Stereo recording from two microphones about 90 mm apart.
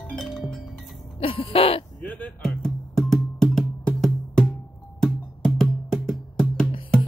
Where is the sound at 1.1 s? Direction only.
90° left.